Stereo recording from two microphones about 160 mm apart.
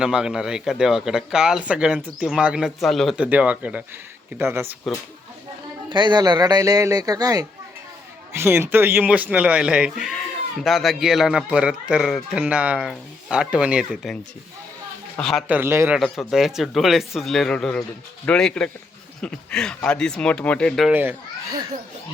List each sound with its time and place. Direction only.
0.0 s speech: 5° right (ahead or behind)
5.9 s speech: 30° right (ahead or behind); by 14.2 s 5° right (ahead or behind)
15.2 s speech: centre (ahead or behind)
15.4 s speech: 10° right (ahead or behind)
16.0 s speech: centre (ahead or behind)
20.9 s speech: 10° right (ahead or behind)